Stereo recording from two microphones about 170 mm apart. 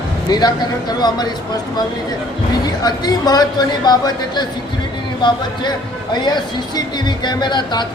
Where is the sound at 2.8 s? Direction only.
25° left (ahead or behind).